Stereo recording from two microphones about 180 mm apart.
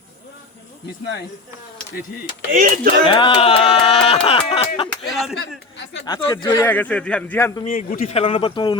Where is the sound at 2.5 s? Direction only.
50° right (ahead or behind).